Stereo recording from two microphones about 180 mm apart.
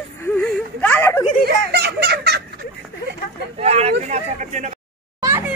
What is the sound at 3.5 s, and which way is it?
Speech, 35° right (ahead or behind).